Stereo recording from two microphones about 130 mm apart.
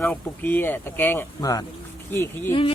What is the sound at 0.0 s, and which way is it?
Speech, 15° left (ahead or behind).